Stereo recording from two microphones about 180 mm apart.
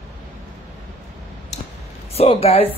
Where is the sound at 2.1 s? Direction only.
35° left (ahead or behind).